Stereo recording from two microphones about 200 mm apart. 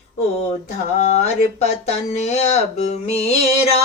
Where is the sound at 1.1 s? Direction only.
35° left (ahead or behind).